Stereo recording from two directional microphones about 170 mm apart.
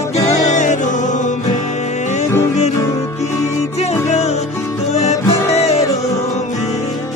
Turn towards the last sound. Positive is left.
turn(degrees=40)  # may be behind; listen again after turning